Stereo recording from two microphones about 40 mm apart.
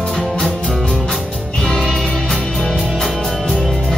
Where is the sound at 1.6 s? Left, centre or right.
Centre.